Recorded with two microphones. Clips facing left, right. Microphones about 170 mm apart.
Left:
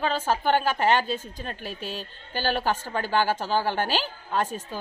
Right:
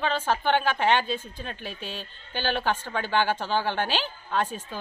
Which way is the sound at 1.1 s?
40° left (ahead or behind).